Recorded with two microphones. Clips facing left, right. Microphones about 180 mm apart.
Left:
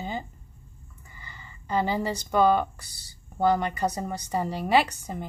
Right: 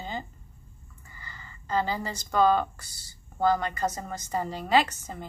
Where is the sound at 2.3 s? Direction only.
10° left (ahead or behind).